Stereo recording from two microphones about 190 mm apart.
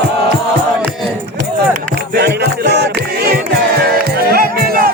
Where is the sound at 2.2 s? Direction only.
55° right (ahead or behind).